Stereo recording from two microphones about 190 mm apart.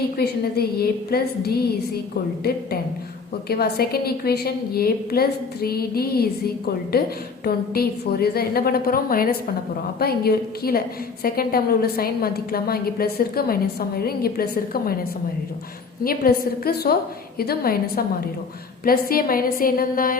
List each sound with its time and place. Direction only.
0.2 s a woman's voice: 55° left (ahead or behind)
3.5 s a woman's voice: 55° left (ahead or behind)
16.0 s a woman's voice: 50° left (ahead or behind)